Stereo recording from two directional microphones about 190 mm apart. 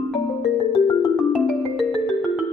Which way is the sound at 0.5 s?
25° left (ahead or behind).